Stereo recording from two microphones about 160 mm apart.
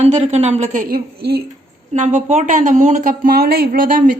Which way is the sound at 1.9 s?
50° right (ahead or behind).